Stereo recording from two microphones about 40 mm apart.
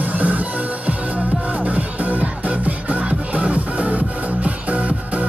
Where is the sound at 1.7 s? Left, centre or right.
Right.